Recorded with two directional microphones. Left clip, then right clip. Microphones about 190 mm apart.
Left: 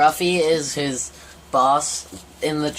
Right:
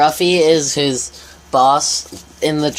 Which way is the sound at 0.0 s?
40° right (ahead or behind).